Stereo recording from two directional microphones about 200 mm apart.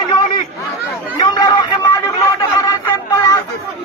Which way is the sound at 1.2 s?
20° left (ahead or behind).